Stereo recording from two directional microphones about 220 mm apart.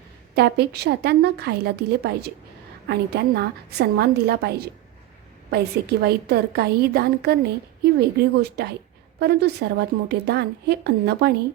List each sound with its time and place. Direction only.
0.3 s speech: 45° right (ahead or behind)